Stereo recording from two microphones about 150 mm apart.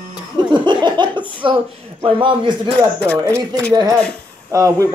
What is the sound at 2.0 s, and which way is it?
Speech, 35° right (ahead or behind).